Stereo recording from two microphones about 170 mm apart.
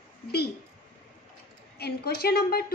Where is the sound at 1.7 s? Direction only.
70° left (ahead or behind).